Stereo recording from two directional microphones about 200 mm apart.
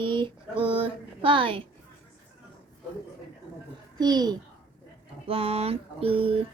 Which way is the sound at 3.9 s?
20° right (ahead or behind).